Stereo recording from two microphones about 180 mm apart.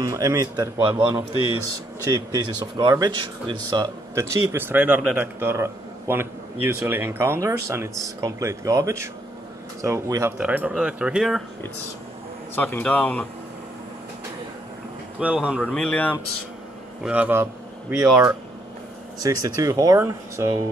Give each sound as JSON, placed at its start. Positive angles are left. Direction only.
{"t": 0.0, "sound": "speech", "side_deg": -20}
{"t": 1.3, "sound": "speech", "side_deg": 30}
{"t": 2.0, "sound": "speech", "side_deg": -25}
{"t": 12.5, "sound": "speech", "side_deg": 10}
{"t": 15.1, "sound": "speech", "side_deg": -5}
{"t": 17.0, "sound": "speech", "side_deg": -10}